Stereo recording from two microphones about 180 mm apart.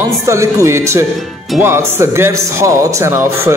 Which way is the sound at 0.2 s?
15° right (ahead or behind).